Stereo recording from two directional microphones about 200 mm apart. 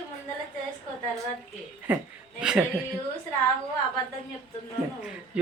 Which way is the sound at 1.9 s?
5° right (ahead or behind).